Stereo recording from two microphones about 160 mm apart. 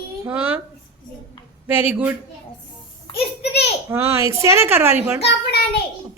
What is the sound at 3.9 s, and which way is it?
A woman's voice, 15° right (ahead or behind).